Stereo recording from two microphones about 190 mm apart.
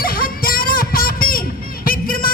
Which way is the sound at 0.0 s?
50° left (ahead or behind).